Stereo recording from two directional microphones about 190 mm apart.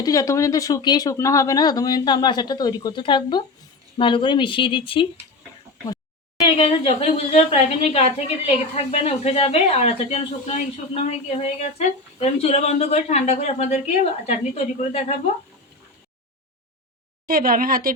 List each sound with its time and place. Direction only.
0.0 s speech: 20° left (ahead or behind)
6.6 s a woman's voice: 30° left (ahead or behind)
17.2 s speech: 50° right (ahead or behind)